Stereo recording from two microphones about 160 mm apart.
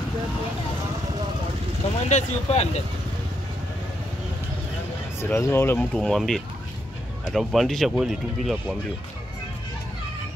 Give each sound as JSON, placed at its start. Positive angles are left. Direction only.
{"t": 2.0, "sound": "speech", "side_deg": 45}
{"t": 5.2, "sound": "speech", "side_deg": 15}
{"t": 5.9, "sound": "speech", "side_deg": 5}